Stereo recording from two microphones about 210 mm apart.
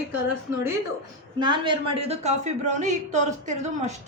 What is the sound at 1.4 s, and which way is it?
A woman's voice, 20° right (ahead or behind).